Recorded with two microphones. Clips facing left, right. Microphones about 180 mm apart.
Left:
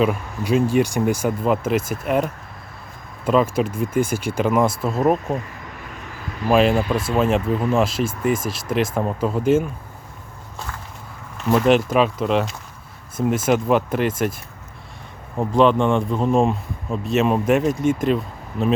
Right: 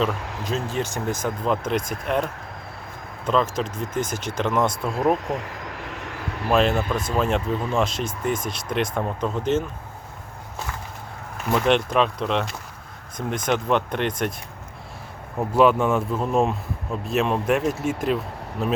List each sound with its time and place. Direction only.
0.4 s speech: 10° left (ahead or behind)
3.2 s speech: 10° left (ahead or behind)
5.4 s a sound: 75° right (ahead or behind)
6.5 s speech: 10° left (ahead or behind)
11.5 s speech: 5° left (ahead or behind)
15.5 s speech: 5° right (ahead or behind)